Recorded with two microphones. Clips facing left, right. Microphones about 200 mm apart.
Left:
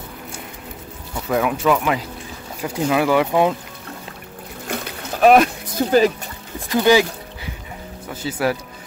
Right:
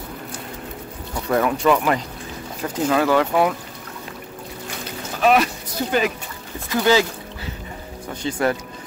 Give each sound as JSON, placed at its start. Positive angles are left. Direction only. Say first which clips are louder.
{"t": 1.3, "sound": "speech", "louder": "even", "side_deg": 5}
{"t": 5.2, "sound": "speech", "louder": "left 5 dB", "side_deg": 50}
{"t": 6.8, "sound": "speech", "louder": "left 3 dB", "side_deg": 15}
{"t": 8.1, "sound": "speech", "louder": "even", "side_deg": 5}